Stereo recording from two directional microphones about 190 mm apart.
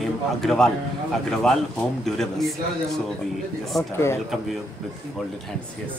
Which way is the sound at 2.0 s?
Centre (ahead or behind).